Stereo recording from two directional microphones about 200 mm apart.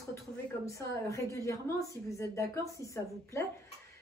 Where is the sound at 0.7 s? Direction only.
15° left (ahead or behind).